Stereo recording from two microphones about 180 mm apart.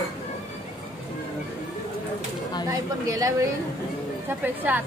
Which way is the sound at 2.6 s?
20° right (ahead or behind).